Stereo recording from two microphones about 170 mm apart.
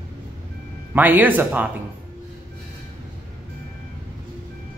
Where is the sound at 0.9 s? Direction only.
10° right (ahead or behind).